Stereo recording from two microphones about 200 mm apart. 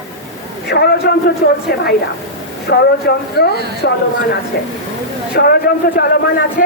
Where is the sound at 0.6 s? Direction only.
55° left (ahead or behind).